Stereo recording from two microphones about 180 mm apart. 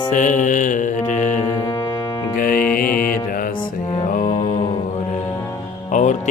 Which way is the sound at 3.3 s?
50° left (ahead or behind).